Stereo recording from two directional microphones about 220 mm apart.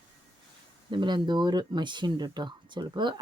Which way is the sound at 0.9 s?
20° right (ahead or behind).